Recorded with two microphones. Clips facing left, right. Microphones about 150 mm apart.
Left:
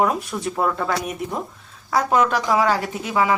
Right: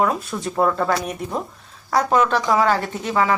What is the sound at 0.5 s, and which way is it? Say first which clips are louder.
Speech: right 4 dB; centre (ahead or behind).